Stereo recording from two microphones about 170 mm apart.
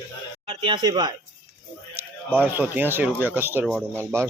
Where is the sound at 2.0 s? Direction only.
10° right (ahead or behind).